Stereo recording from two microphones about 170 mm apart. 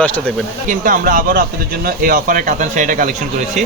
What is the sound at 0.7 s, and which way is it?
A man's voice, 55° right (ahead or behind).